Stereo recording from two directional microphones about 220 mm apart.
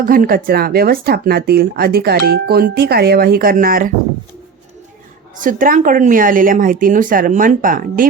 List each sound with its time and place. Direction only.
0.0 s speech: 40° right (ahead or behind)
5.4 s speech: 40° right (ahead or behind)